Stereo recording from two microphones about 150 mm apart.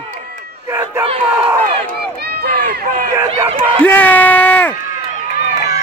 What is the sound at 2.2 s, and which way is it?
Run, 90° right.